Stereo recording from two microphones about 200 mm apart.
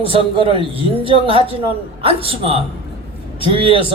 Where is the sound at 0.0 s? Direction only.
25° right (ahead or behind).